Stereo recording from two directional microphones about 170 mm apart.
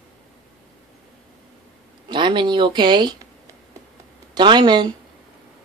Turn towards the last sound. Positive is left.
turn(degrees=-25)  # may be behind; listen again after turning